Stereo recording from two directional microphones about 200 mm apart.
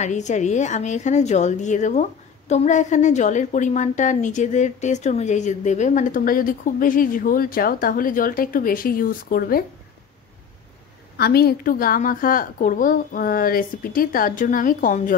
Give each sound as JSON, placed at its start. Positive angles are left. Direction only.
{"t": 0.0, "sound": "a woman's voice", "side_deg": 35}
{"t": 11.1, "sound": "a woman's voice", "side_deg": 50}